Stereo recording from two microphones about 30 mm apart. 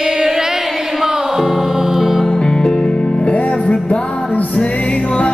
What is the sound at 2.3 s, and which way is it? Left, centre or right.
Music, left.